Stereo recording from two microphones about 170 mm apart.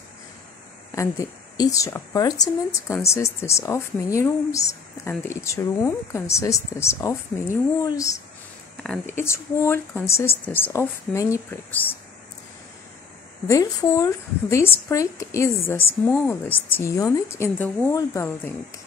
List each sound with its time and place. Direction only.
0.9 s speech: 20° left (ahead or behind)
13.5 s a woman's voice: 20° left (ahead or behind)